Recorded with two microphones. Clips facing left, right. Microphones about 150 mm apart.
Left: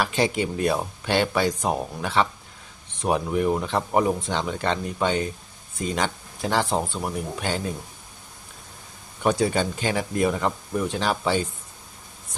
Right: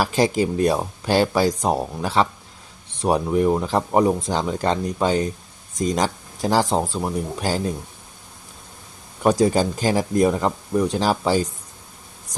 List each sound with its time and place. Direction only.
0.0 s speech: 35° right (ahead or behind)
9.2 s speech: 40° right (ahead or behind)